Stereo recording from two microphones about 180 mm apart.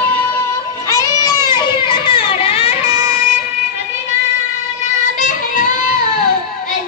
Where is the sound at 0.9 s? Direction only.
20° left (ahead or behind).